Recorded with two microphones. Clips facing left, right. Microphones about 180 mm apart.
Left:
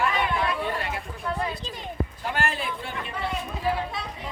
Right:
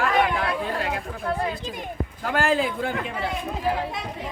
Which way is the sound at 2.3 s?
90° right.